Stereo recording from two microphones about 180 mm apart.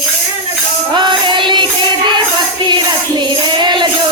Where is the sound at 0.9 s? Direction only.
25° right (ahead or behind).